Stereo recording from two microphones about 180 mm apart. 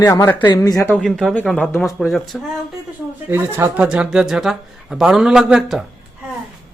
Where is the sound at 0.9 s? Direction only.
5° left (ahead or behind).